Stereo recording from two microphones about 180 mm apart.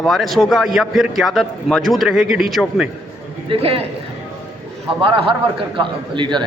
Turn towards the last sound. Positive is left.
turn(degrees=-25)  # may be behind; listen again after turning